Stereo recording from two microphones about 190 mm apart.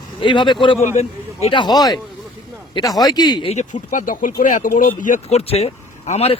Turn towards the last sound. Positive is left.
turn(degrees=30)  # may be behind; listen again after turning